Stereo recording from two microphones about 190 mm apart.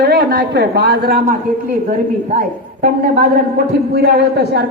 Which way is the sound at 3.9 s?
60° right (ahead or behind).